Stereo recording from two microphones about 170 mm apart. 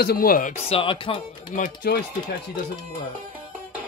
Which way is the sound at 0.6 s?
35° left (ahead or behind).